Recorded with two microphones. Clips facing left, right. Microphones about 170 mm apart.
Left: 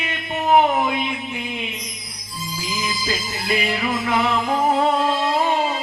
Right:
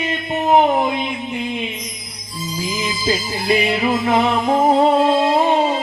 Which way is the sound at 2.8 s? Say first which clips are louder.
Right 6 dB; 30° right (ahead or behind).